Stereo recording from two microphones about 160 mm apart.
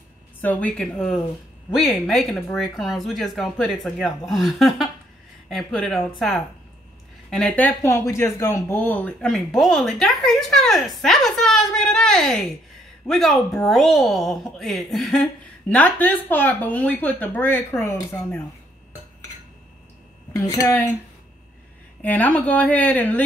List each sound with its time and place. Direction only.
0.4 s speech: 10° left (ahead or behind)
20.3 s speech: 20° left (ahead or behind)
22.0 s speech: 10° left (ahead or behind)